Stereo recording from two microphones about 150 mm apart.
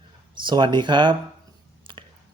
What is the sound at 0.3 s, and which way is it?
Speech, 30° right (ahead or behind).